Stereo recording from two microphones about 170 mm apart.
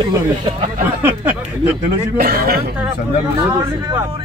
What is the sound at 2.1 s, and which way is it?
Speech, 60° right (ahead or behind).